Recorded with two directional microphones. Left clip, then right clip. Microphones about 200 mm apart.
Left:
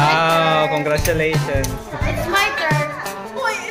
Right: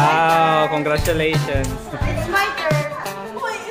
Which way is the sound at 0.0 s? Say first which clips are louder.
Even; 5° right (ahead or behind).